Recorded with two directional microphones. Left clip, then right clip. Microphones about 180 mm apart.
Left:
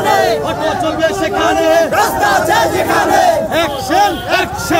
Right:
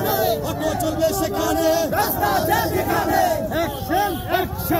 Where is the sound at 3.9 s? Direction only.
55° left (ahead or behind).